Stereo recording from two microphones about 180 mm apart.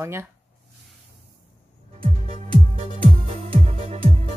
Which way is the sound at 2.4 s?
30° right (ahead or behind).